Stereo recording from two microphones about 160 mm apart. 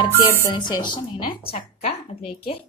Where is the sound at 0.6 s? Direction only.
30° left (ahead or behind).